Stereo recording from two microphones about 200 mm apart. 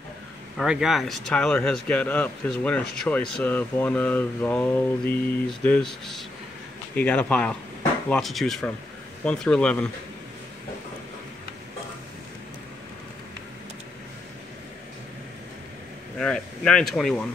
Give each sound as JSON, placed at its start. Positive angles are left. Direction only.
{"t": 0.6, "sound": "speech", "side_deg": 0}
{"t": 16.2, "sound": "speech", "side_deg": 5}